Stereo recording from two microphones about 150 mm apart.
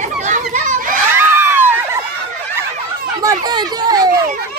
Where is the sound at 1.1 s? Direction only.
15° right (ahead or behind).